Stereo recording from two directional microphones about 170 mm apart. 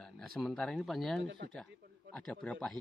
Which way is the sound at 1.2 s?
90° right.